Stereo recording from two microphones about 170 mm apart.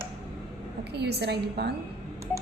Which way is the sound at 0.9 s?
75° right (ahead or behind).